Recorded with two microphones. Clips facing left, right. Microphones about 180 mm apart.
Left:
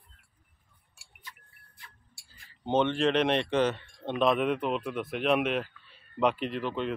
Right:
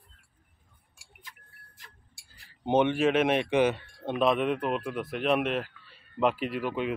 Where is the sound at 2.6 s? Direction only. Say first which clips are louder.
Right 2 dB; 10° right (ahead or behind).